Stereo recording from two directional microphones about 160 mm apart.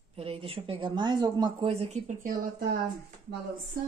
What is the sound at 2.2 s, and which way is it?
Speech, 65° right (ahead or behind).